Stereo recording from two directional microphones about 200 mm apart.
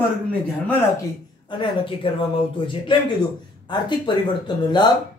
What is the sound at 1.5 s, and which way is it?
A man's voice, 25° left (ahead or behind).